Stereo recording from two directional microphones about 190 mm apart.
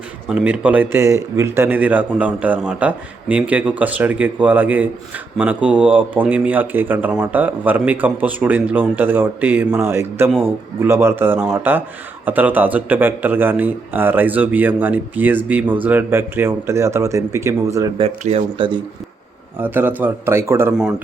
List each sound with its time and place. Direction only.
0.3 s speech: 5° right (ahead or behind)
18.0 s speech: 30° right (ahead or behind)
19.5 s speech: 10° right (ahead or behind)